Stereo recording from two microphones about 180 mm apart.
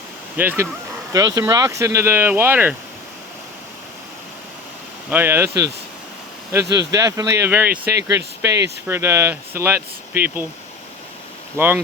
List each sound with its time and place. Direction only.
0.3 s speech: 15° right (ahead or behind)
5.1 s speech: 10° right (ahead or behind)
11.5 s speech: 10° right (ahead or behind)